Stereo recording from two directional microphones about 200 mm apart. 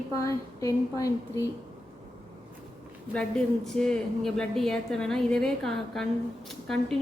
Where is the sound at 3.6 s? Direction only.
Centre (ahead or behind).